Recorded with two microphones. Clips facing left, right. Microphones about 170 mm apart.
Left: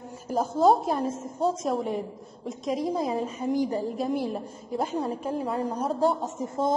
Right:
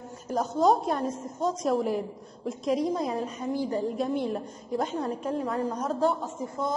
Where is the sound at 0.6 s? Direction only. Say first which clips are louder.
Left 2 dB; 5° left (ahead or behind).